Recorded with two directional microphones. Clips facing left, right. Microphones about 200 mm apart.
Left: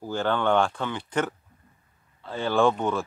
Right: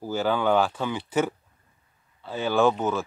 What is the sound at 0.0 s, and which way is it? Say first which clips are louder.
Speech: right 1 dB; 5° right (ahead or behind).